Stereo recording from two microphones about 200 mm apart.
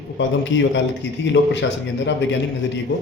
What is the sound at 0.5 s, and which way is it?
Speech, 65° left (ahead or behind).